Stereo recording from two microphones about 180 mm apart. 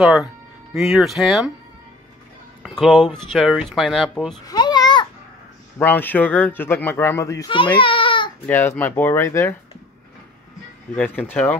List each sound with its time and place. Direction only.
0.0 s speech: centre (ahead or behind)
2.6 s speech: centre (ahead or behind)
4.5 s babbling: 20° left (ahead or behind)
5.8 s speech: 10° left (ahead or behind)
7.8 s baby cry: 30° left (ahead or behind)
8.5 s speech: 10° left (ahead or behind)
11.0 s speech: 10° left (ahead or behind)